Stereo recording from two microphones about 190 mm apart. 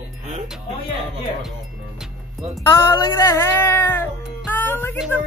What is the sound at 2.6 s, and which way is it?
Speech, 20° left (ahead or behind).